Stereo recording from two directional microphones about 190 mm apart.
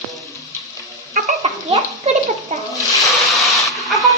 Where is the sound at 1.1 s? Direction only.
40° right (ahead or behind).